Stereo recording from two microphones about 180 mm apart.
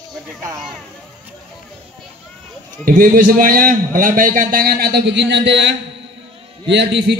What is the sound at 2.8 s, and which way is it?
A man's voice, 50° right (ahead or behind).